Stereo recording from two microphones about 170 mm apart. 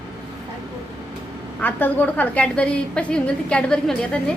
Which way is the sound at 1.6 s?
10° left (ahead or behind).